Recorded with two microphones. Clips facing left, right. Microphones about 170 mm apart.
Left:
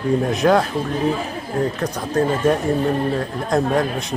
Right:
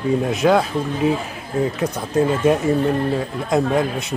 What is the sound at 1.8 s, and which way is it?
Speech, 5° right (ahead or behind).